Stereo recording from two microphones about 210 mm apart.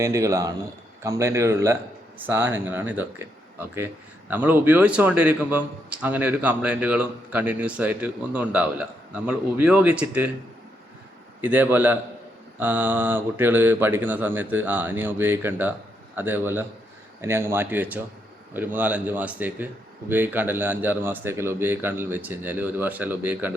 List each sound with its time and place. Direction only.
0.0 s a man's voice: 15° right (ahead or behind)
4.3 s a man's voice: 10° right (ahead or behind)
11.3 s a man's voice: 10° right (ahead or behind)